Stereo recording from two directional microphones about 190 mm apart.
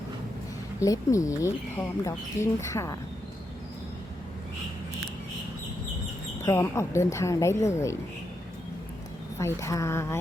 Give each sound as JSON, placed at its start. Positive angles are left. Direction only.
{"t": 0.8, "sound": "speech", "side_deg": 15}
{"t": 6.4, "sound": "speech", "side_deg": 15}
{"t": 9.4, "sound": "speech", "side_deg": 15}